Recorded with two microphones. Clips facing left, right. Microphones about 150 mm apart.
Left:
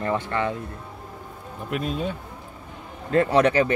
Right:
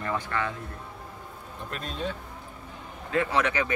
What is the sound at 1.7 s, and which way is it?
Speech, 10° left (ahead or behind).